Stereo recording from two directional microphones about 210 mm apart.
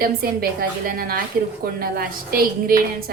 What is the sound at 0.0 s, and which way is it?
A woman's voice, 45° right (ahead or behind).